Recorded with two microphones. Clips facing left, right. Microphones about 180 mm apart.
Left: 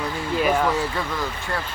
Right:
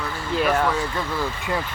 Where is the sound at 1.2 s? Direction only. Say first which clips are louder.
Right 2 dB; 15° right (ahead or behind).